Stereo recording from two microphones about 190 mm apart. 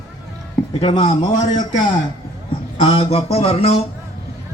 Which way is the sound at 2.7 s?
30° left (ahead or behind).